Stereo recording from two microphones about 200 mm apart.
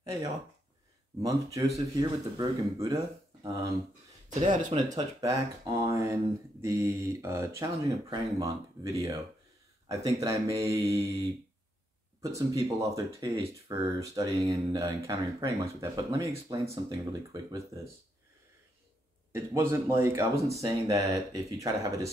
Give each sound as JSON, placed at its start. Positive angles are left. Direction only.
{"t": 0.0, "sound": "speech", "side_deg": -15}
{"t": 4.3, "sound": "speech", "side_deg": -40}
{"t": 4.6, "sound": "speech", "side_deg": -20}
{"t": 12.4, "sound": "speech", "side_deg": -15}
{"t": 19.3, "sound": "speech", "side_deg": -15}